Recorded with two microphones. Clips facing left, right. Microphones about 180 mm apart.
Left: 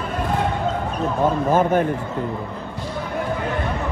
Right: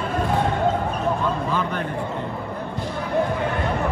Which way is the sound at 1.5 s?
45° left (ahead or behind).